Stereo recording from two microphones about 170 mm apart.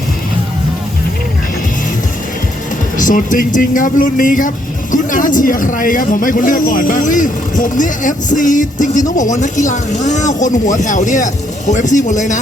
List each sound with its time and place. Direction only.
3.0 s speech: 50° left (ahead or behind)